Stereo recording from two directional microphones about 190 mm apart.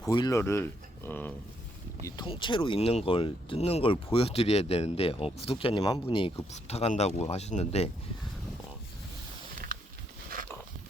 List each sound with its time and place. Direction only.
0.0 s speech: 20° left (ahead or behind); by 7.9 s 35° left (ahead or behind)